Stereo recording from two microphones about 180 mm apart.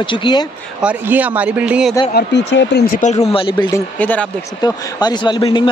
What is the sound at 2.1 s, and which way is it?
Speech, 70° left (ahead or behind).